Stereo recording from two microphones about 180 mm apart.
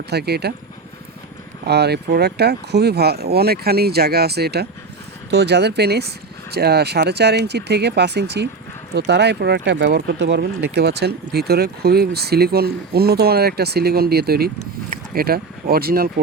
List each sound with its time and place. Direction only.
0.1 s speech: 65° right (ahead or behind)
1.6 s speech: 65° right (ahead or behind)